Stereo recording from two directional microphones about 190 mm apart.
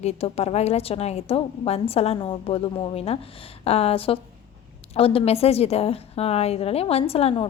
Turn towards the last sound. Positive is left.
turn(degrees=30)  # may be behind; listen again after turning